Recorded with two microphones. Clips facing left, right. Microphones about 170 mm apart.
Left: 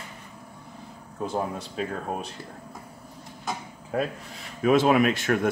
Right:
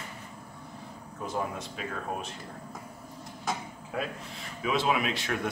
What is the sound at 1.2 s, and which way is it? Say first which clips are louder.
Speech: left 4 dB; 35° left (ahead or behind).